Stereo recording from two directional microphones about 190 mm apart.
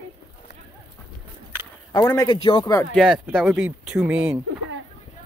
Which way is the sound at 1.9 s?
20° left (ahead or behind).